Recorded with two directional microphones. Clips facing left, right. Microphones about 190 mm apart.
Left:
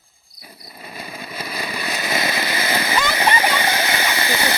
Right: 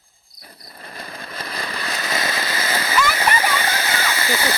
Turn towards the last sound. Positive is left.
turn(degrees=15)  # may be behind; listen again after turning